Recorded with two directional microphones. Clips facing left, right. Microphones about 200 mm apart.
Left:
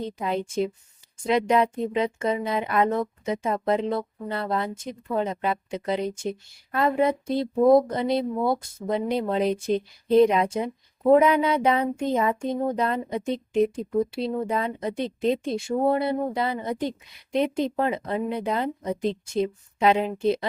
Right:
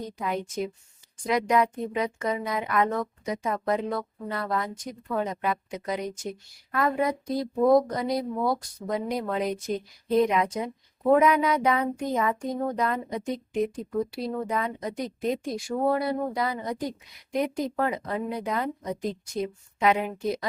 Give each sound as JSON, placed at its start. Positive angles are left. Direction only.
{"t": 0.0, "sound": "speech", "side_deg": 30}